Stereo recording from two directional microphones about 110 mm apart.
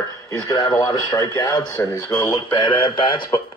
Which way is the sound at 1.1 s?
40° left (ahead or behind).